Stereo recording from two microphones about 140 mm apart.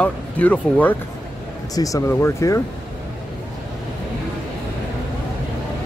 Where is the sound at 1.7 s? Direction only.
25° left (ahead or behind).